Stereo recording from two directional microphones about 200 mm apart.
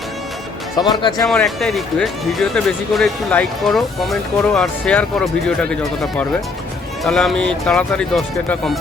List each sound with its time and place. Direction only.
0.8 s speech: 20° left (ahead or behind)
1.3 s speech: centre (ahead or behind)